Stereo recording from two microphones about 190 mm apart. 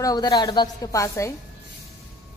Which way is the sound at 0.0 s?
20° left (ahead or behind).